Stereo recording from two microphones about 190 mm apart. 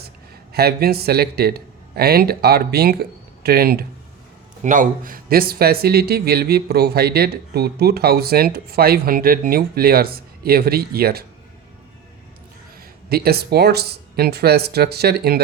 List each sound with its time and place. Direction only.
0.5 s speech: 55° right (ahead or behind)
13.1 s speech: 55° right (ahead or behind)